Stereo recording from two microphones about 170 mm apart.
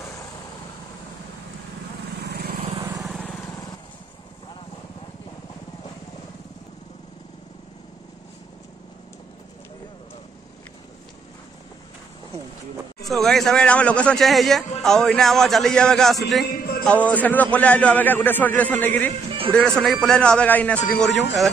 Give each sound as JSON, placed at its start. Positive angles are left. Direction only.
{"t": 2.2, "sound": "vehicle", "side_deg": -70}
{"t": 3.0, "sound": "vehicle", "side_deg": 0}
{"t": 13.1, "sound": "a man's voice", "side_deg": 0}
{"t": 16.4, "sound": "a sound", "side_deg": 65}
{"t": 16.8, "sound": "a man's voice", "side_deg": 10}